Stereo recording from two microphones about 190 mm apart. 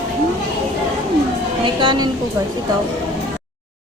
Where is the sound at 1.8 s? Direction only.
25° right (ahead or behind).